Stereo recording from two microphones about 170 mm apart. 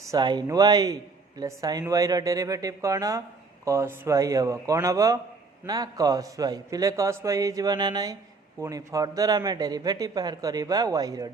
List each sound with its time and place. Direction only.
0.0 s speech: 20° right (ahead or behind)